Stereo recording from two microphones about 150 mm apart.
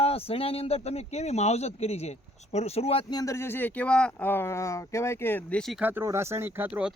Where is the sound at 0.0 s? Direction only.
40° left (ahead or behind).